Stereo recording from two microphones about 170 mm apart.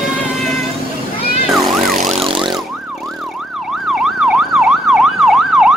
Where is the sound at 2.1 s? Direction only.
35° right (ahead or behind).